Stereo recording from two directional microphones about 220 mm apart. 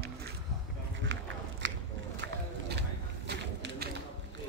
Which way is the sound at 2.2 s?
50° right (ahead or behind).